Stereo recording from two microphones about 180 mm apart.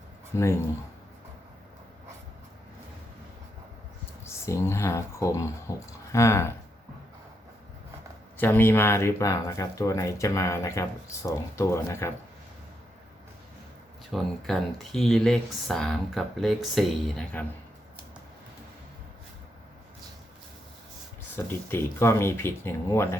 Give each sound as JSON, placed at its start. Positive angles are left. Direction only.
{"t": 0.3, "sound": "speech", "side_deg": 15}
{"t": 4.3, "sound": "speech", "side_deg": 15}
{"t": 8.4, "sound": "speech", "side_deg": 10}
{"t": 14.1, "sound": "speech", "side_deg": 0}
{"t": 21.3, "sound": "speech", "side_deg": 10}